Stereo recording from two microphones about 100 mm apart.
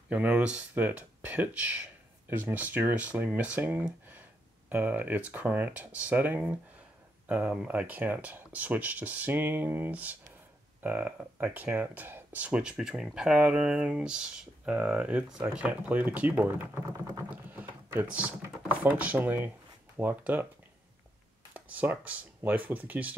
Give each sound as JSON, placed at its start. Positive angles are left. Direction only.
{"t": 0.1, "sound": "speech", "side_deg": -10}
{"t": 17.5, "sound": "typing", "side_deg": -15}
{"t": 18.8, "sound": "speech", "side_deg": -15}
{"t": 21.5, "sound": "speech", "side_deg": -15}